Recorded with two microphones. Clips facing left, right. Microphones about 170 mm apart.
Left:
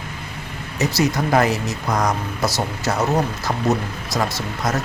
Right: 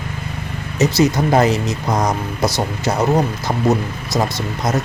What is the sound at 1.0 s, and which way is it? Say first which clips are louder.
Speech: right 3 dB; 20° right (ahead or behind).